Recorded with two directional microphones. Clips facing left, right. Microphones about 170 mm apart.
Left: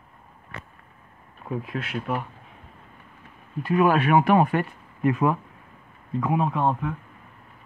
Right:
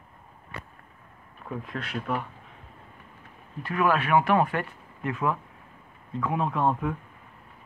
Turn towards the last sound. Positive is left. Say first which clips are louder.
# left 1 dB
turn(degrees=0)  # may be behind; listen again after turning